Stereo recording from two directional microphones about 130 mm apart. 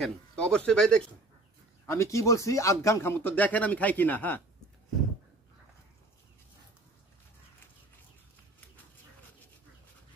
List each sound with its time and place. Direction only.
0.0 s speech: 5° left (ahead or behind)
1.9 s speech: 20° left (ahead or behind)